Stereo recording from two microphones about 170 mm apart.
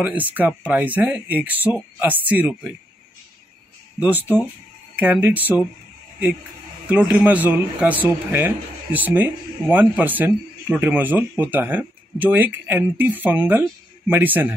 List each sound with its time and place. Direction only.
0.0 s speech: 10° right (ahead or behind)
4.9 s speech: 10° right (ahead or behind)
6.9 s speech: 10° right (ahead or behind)